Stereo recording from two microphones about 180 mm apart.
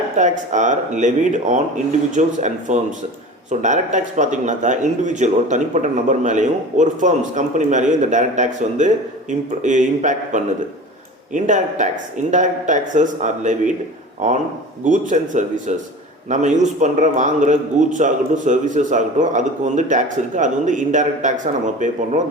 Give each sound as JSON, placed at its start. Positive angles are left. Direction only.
{"t": 0.2, "sound": "a man's voice", "side_deg": -45}